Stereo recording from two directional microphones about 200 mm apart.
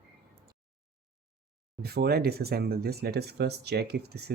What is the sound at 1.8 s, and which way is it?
Speech, 55° right (ahead or behind).